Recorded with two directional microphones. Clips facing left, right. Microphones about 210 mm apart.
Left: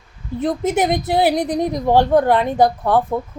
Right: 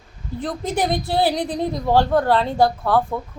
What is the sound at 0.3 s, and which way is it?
A woman's voice, 20° left (ahead or behind).